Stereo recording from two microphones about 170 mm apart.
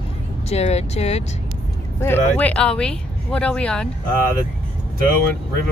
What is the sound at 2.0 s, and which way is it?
Speech, 10° left (ahead or behind).